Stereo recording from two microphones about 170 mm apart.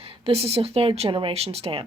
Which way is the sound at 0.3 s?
35° right (ahead or behind).